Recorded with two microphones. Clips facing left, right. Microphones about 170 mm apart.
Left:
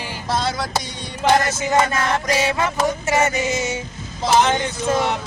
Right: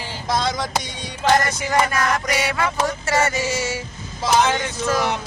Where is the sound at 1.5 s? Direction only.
25° left (ahead or behind).